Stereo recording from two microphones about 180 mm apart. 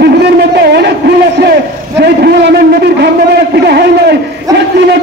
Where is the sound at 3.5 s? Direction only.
65° right (ahead or behind).